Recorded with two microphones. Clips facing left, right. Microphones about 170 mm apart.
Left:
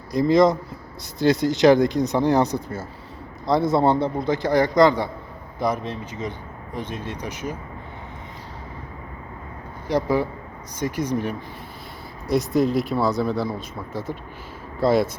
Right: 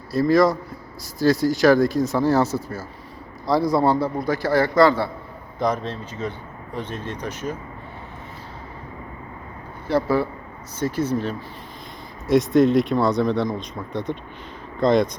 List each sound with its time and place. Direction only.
0.1 s speech: 20° left (ahead or behind)
9.8 s speech: 15° left (ahead or behind)
12.3 s speech: centre (ahead or behind)